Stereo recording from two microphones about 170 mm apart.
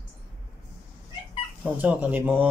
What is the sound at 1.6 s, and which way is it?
Speech, 10° right (ahead or behind).